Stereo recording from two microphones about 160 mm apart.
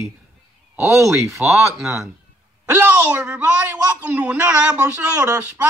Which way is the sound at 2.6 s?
10° right (ahead or behind).